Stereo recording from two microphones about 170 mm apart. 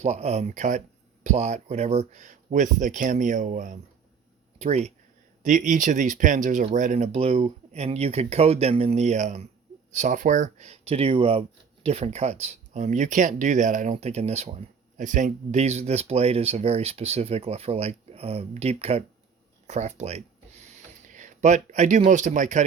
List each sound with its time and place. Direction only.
0.0 s a man's voice: 40° right (ahead or behind)